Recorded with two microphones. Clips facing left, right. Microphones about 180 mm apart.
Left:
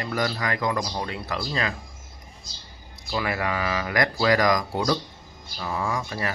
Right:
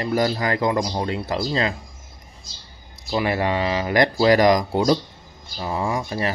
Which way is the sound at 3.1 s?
25° right (ahead or behind).